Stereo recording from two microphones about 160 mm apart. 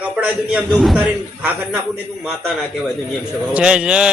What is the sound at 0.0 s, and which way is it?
A man's voice, 5° right (ahead or behind).